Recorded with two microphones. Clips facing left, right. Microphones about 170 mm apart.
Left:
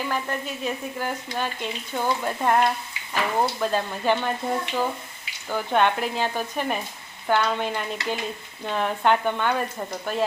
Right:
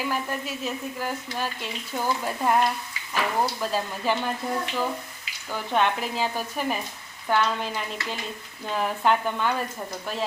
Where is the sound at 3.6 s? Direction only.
5° right (ahead or behind).